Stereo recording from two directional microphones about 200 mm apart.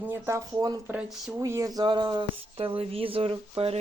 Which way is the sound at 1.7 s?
20° right (ahead or behind).